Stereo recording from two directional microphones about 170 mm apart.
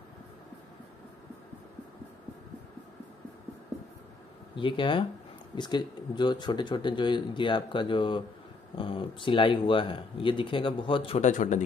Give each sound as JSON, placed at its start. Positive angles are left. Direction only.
{"t": 4.6, "sound": "speech", "side_deg": 30}